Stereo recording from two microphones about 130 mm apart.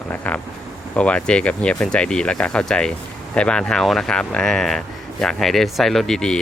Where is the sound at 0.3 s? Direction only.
10° left (ahead or behind).